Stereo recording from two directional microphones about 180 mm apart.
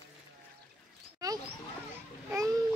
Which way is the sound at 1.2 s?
20° right (ahead or behind).